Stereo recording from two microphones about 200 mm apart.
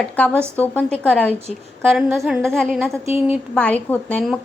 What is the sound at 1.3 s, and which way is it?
Speech, 30° right (ahead or behind).